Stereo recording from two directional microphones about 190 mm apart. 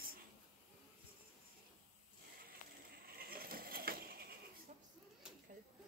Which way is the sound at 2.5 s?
50° right (ahead or behind).